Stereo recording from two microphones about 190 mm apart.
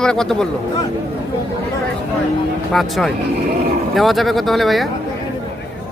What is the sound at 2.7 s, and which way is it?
Speech, centre (ahead or behind).